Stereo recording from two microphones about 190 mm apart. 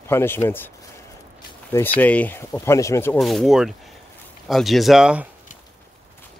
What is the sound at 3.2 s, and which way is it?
Speech, centre (ahead or behind).